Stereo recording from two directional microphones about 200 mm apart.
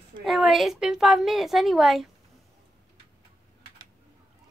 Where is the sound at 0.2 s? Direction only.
Centre (ahead or behind).